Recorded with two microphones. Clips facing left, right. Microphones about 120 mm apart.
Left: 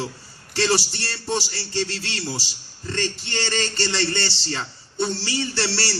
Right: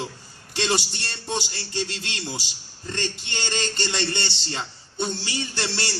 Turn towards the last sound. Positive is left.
turn(degrees=-20)  # may be behind; listen again after turning